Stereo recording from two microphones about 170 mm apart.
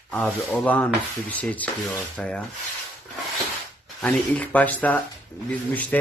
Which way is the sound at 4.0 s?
10° left (ahead or behind).